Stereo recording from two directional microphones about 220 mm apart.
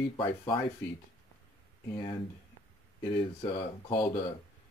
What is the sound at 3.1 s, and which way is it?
Speech, 25° left (ahead or behind).